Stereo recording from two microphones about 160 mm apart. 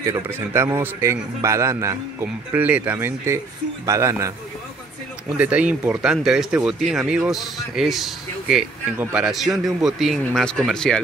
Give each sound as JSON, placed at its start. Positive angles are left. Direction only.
{"t": 0.0, "sound": "a man's voice", "side_deg": -15}
{"t": 5.4, "sound": "speech", "side_deg": -10}